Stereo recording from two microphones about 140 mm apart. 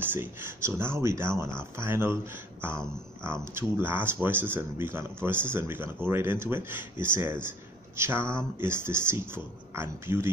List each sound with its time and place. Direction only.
0.0 s speech: 15° right (ahead or behind)